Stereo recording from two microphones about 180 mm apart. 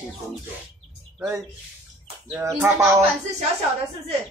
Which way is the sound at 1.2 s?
10° right (ahead or behind).